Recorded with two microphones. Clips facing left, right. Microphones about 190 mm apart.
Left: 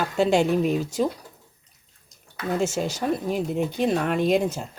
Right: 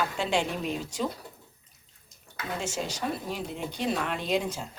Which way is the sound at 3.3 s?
50° left (ahead or behind).